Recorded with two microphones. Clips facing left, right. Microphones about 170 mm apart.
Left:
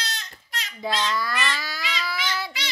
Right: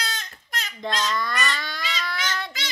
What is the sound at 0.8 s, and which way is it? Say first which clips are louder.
A child's voice: left 1 dB; 5° left (ahead or behind).